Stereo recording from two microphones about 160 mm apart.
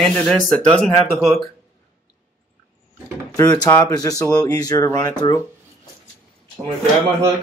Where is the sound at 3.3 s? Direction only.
20° left (ahead or behind).